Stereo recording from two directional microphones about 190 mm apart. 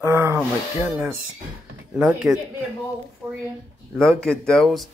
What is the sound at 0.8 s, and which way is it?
Speech, centre (ahead or behind).